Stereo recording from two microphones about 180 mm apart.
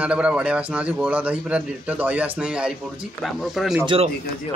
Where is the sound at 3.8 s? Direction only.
30° right (ahead or behind).